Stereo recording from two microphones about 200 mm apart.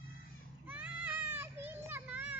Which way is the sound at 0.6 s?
10° right (ahead or behind).